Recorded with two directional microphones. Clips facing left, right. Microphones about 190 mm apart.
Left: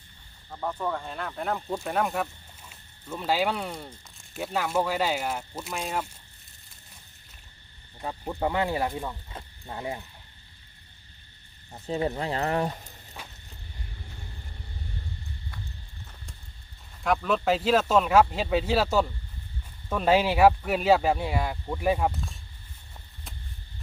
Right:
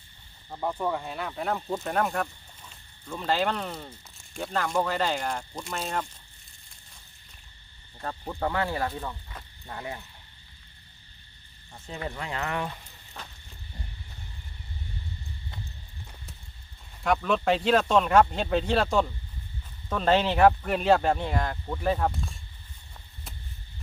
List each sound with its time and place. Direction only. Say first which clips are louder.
0.5 s speech: right 1 dB; 10° right (ahead or behind); by 6.1 s 5° left (ahead or behind)
8.0 s speech: left 2 dB; 15° left (ahead or behind)
11.9 s speech: left 7 dB; 35° left (ahead or behind)
13.2 s insect: right 1 dB; 10° left (ahead or behind)
17.0 s speech: even; centre (ahead or behind)